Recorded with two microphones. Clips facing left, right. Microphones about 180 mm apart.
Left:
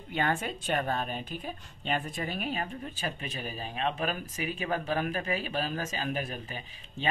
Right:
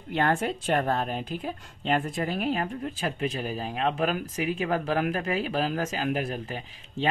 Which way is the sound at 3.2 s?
90° right.